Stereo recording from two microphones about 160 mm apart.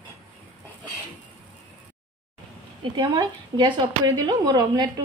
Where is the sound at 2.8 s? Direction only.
30° right (ahead or behind).